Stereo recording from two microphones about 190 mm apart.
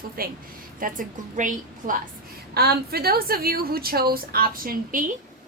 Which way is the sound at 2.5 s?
55° right (ahead or behind).